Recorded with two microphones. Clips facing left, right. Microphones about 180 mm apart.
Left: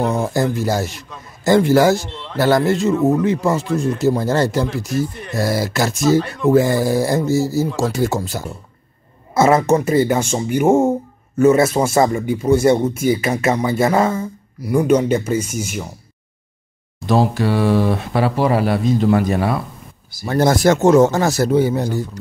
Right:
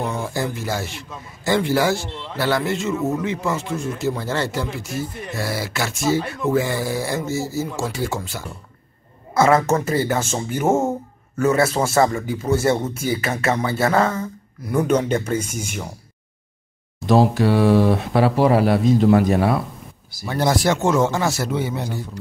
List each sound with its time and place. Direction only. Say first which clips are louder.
0.0 s a man's voice: left 6 dB; 40° left (ahead or behind)
9.3 s a man's voice: left 3 dB; 20° left (ahead or behind); by 15.9 s 5° left (ahead or behind)
17.0 s speech: right 1 dB; centre (ahead or behind)
20.2 s speech: left 5 dB; 45° left (ahead or behind)